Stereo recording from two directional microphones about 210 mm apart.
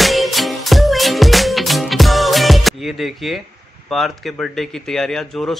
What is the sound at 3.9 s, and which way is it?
Speech, centre (ahead or behind).